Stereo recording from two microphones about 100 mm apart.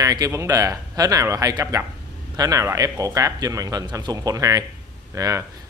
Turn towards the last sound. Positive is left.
turn(degrees=-35)  # may be behind; listen again after turning